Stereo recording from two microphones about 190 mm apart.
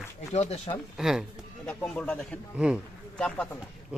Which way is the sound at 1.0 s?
Centre (ahead or behind).